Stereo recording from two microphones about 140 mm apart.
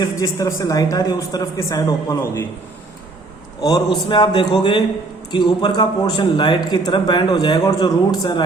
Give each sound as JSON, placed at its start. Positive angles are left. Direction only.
{"t": 0.0, "sound": "speech", "side_deg": 25}
{"t": 3.6, "sound": "a man's voice", "side_deg": 30}